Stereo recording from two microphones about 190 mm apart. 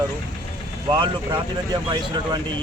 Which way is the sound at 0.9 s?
25° right (ahead or behind).